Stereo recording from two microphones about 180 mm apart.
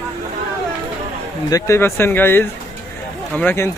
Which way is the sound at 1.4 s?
20° left (ahead or behind).